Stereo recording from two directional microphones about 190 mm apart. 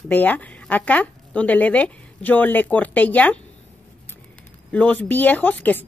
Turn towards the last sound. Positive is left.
turn(degrees=10)  # may be behind; listen again after turning